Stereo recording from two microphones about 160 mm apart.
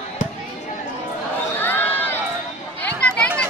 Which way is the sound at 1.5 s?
10° left (ahead or behind).